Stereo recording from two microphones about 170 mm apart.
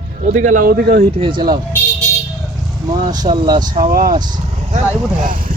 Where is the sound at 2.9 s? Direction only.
25° right (ahead or behind).